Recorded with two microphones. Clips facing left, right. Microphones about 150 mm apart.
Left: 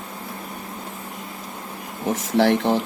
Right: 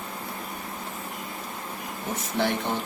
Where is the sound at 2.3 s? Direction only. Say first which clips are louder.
Left 9 dB; 80° left.